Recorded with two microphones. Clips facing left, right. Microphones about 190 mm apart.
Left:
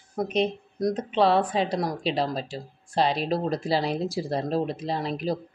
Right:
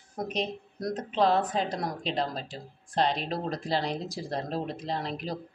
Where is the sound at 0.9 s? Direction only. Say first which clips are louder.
Left 2 dB; 90° left.